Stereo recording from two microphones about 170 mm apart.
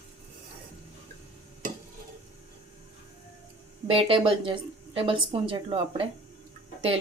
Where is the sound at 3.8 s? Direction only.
30° right (ahead or behind).